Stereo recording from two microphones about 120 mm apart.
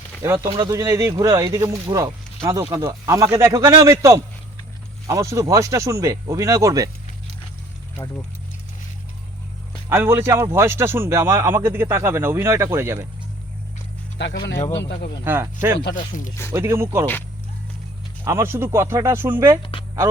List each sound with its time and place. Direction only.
0.2 s speech: 20° right (ahead or behind)
9.9 s speech: 20° right (ahead or behind)
15.2 s speech: 20° right (ahead or behind)
16.0 s speech: 90° left
16.5 s speech: 25° right (ahead or behind)
18.3 s speech: 25° right (ahead or behind)